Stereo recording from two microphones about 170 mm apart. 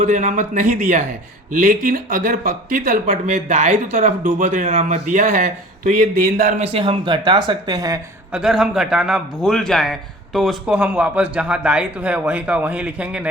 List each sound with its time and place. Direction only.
0.0 s speech: 50° right (ahead or behind); by 7.9 s 20° right (ahead or behind)
8.3 s a man's voice: 5° right (ahead or behind)